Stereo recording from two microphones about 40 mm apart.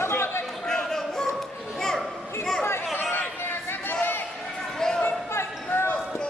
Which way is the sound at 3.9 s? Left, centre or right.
Left.